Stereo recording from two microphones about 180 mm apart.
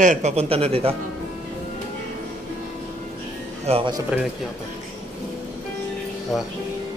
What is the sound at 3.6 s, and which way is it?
Speech, 30° right (ahead or behind).